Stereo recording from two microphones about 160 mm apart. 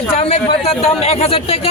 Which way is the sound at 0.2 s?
40° left (ahead or behind).